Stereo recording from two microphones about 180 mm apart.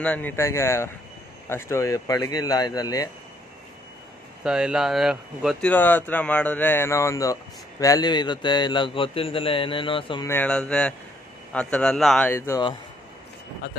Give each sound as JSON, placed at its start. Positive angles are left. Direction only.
{"t": 0.0, "sound": "a man's voice", "side_deg": 10}
{"t": 4.4, "sound": "a man's voice", "side_deg": -5}
{"t": 10.2, "sound": "speech", "side_deg": 10}
{"t": 12.3, "sound": "speech", "side_deg": 15}